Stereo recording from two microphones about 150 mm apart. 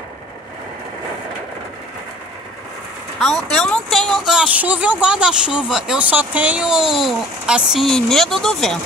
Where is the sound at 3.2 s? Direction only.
Centre (ahead or behind).